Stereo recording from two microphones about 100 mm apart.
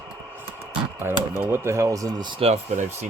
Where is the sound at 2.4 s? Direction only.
80° right.